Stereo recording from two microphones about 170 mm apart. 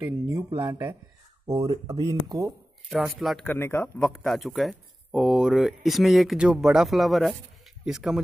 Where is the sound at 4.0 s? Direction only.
Centre (ahead or behind).